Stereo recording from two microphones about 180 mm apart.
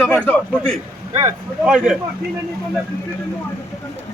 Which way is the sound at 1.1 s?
35° right (ahead or behind).